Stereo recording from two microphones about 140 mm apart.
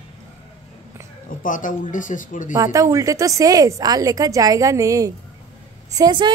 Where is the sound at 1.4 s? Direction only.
70° left (ahead or behind).